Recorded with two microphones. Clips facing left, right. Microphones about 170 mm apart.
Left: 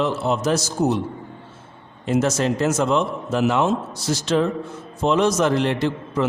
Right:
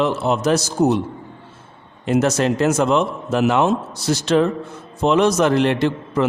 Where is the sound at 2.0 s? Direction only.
65° right (ahead or behind).